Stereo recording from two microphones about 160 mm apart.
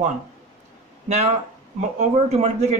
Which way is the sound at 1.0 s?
45° right (ahead or behind).